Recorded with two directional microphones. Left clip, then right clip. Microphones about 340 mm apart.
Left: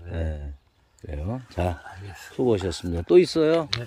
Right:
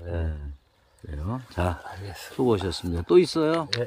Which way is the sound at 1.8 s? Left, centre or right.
Right.